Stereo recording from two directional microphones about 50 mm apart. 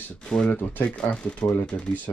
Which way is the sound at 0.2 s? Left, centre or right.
Centre.